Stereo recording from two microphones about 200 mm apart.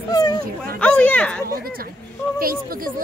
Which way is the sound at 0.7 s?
5° left (ahead or behind).